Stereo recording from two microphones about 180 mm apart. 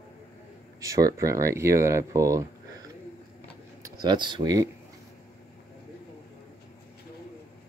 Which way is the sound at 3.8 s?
25° right (ahead or behind).